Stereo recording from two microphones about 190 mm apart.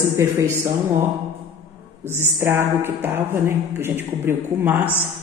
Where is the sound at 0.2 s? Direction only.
15° right (ahead or behind).